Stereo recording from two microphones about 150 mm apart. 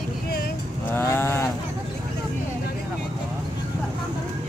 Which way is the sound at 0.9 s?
15° left (ahead or behind).